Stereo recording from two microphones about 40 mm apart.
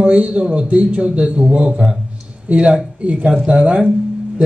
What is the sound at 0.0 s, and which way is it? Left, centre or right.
A man's voice, right.